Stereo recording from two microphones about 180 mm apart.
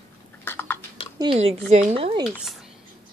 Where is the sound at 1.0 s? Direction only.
30° left (ahead or behind).